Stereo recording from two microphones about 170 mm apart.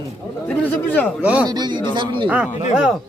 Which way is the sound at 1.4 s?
25° right (ahead or behind).